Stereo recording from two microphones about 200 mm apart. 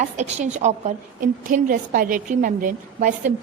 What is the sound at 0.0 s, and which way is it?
A woman's voice, 35° right (ahead or behind).